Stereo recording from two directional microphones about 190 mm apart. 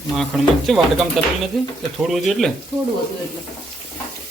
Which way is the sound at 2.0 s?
Centre (ahead or behind).